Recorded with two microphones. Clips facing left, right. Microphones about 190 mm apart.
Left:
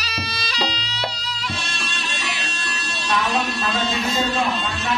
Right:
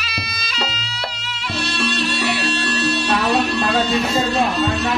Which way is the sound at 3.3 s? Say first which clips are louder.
Right 5 dB; 65° right (ahead or behind).